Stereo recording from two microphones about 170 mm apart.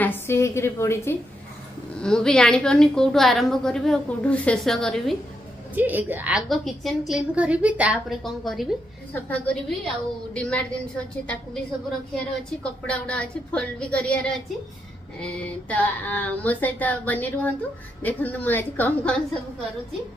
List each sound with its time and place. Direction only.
0.0 s a woman's voice: 15° left (ahead or behind)
2.0 s a woman's voice: 5° left (ahead or behind)
5.8 s a woman's voice: 10° right (ahead or behind); by 19.2 s 10° left (ahead or behind)